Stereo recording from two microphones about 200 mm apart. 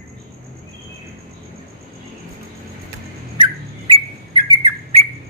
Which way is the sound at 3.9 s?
20° right (ahead or behind).